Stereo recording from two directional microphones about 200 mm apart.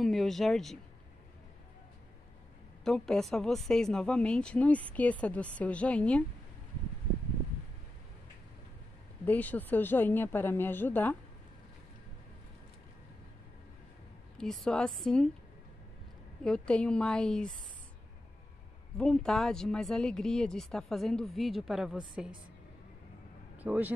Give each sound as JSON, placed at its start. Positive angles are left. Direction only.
{"t": 0.0, "sound": "speech", "side_deg": 0}
{"t": 2.8, "sound": "speech", "side_deg": 0}
{"t": 9.2, "sound": "speech", "side_deg": 10}
{"t": 14.4, "sound": "speech", "side_deg": 0}
{"t": 16.4, "sound": "speech", "side_deg": 5}
{"t": 18.9, "sound": "speech", "side_deg": 5}
{"t": 23.6, "sound": "speech", "side_deg": -10}